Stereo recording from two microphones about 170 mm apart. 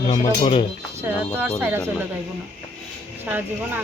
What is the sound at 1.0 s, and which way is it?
Speech, 10° right (ahead or behind).